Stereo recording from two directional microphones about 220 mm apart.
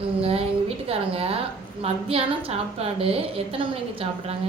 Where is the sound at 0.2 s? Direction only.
25° right (ahead or behind).